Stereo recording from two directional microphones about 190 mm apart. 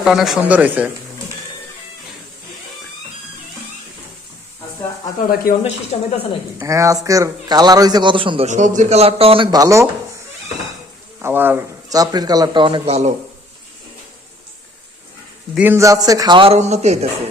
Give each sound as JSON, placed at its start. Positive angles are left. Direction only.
{"t": 0.0, "sound": "a man's voice", "side_deg": 0}
{"t": 5.5, "sound": "speech", "side_deg": 35}
{"t": 6.6, "sound": "a man's voice", "side_deg": -15}
{"t": 8.4, "sound": "a man's voice", "side_deg": -40}
{"t": 11.2, "sound": "a man's voice", "side_deg": -10}
{"t": 15.5, "sound": "a man's voice", "side_deg": -10}